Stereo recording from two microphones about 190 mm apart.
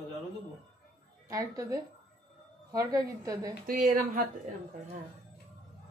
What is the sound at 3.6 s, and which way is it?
Speech, 45° right (ahead or behind).